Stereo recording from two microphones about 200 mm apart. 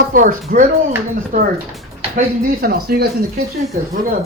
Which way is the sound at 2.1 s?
50° right (ahead or behind).